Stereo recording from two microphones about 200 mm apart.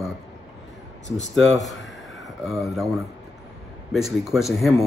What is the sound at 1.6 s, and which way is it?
Speech, centre (ahead or behind).